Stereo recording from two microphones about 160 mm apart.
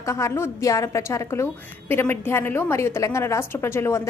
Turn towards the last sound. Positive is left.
turn(degrees=15)  # may be behind; listen again after turning